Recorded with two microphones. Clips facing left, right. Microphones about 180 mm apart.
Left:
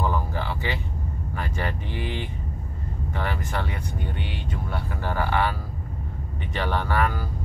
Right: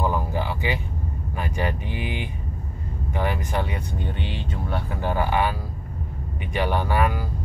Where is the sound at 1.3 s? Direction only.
15° right (ahead or behind).